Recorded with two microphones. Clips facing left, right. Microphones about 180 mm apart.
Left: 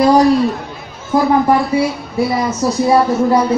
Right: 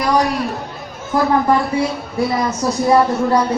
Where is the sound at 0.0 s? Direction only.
30° left (ahead or behind).